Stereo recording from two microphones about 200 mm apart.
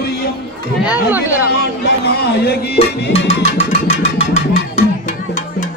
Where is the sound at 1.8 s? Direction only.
55° left (ahead or behind).